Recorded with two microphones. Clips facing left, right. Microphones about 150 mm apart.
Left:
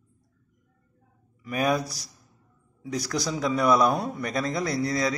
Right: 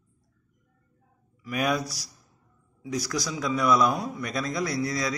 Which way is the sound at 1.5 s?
35° left (ahead or behind).